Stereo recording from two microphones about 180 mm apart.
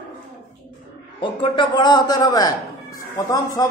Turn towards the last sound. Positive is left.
turn(degrees=20)  # may be behind; listen again after turning